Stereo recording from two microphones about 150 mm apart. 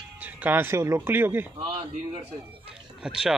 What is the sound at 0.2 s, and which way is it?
Speech, 10° right (ahead or behind).